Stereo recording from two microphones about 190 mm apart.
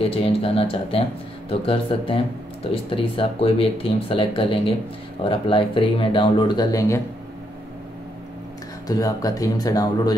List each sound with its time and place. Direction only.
0.0 s speech: 30° left (ahead or behind)
8.8 s speech: 20° left (ahead or behind)